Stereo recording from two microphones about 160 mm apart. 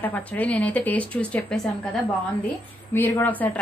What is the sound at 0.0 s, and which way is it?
A woman's voice, 10° left (ahead or behind).